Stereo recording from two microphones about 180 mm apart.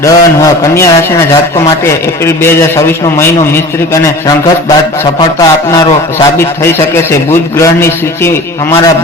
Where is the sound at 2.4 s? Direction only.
15° left (ahead or behind).